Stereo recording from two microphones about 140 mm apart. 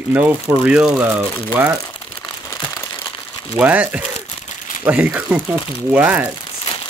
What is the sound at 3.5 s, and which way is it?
Speech, 10° right (ahead or behind).